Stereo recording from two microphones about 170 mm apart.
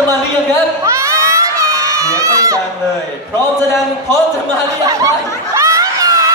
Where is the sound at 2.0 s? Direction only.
20° right (ahead or behind).